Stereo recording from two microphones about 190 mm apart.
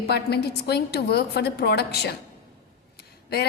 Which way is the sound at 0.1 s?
60° left (ahead or behind).